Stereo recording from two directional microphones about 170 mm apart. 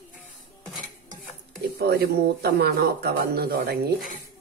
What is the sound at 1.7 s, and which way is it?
Speech, 70° right (ahead or behind).